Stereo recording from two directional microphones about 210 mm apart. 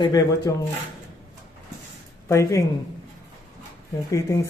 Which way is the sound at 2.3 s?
15° left (ahead or behind).